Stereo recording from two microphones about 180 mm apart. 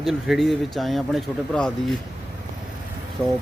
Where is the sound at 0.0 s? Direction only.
Centre (ahead or behind).